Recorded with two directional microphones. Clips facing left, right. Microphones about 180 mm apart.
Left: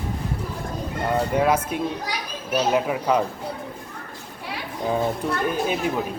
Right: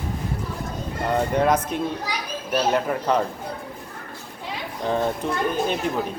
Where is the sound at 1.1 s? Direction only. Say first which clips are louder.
Right 1 dB; 5° left (ahead or behind).